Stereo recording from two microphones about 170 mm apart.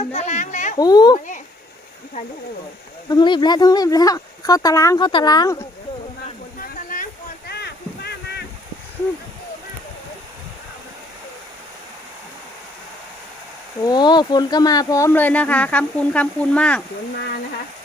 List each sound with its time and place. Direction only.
0.0 s a sound: 40° left (ahead or behind)
0.8 s speech: 25° left (ahead or behind)
3.1 s speech: 25° left (ahead or behind)
6.6 s boat: 55° left (ahead or behind); by 8.4 s 70° left (ahead or behind)
13.8 s speech: 25° left (ahead or behind); by 16.8 s 5° left (ahead or behind)